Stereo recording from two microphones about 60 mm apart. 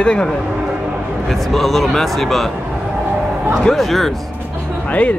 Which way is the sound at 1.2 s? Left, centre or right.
Centre.